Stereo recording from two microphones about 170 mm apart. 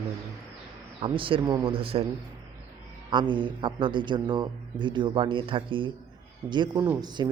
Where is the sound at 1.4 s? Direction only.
15° right (ahead or behind).